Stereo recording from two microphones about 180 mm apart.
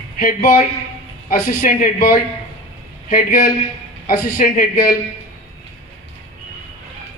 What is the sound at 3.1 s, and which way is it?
Speech, 50° left (ahead or behind).